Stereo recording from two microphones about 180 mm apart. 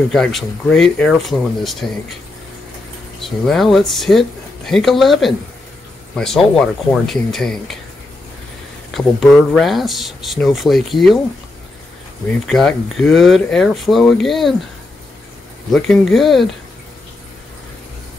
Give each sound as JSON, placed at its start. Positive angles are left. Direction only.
{"t": 0.1, "sound": "speech", "side_deg": 0}
{"t": 3.2, "sound": "speech", "side_deg": 0}
{"t": 8.9, "sound": "speech", "side_deg": 0}
{"t": 12.4, "sound": "speech", "side_deg": 0}
{"t": 15.7, "sound": "speech", "side_deg": 0}